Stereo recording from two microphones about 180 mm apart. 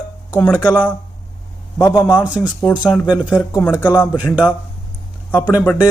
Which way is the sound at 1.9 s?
20° left (ahead or behind).